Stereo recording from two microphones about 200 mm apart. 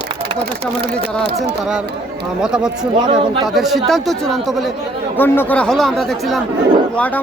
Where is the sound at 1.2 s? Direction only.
55° right (ahead or behind).